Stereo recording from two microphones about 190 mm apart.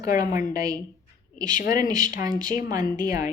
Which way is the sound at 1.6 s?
45° left (ahead or behind).